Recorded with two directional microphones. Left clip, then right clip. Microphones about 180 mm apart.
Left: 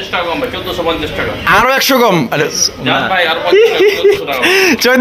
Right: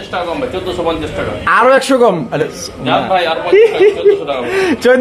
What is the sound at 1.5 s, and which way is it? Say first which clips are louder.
Speech: even; 20° left (ahead or behind).